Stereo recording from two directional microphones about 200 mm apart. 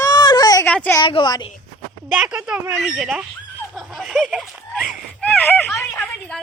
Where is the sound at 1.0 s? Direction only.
25° left (ahead or behind).